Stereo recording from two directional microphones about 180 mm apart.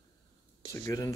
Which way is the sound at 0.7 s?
20° left (ahead or behind).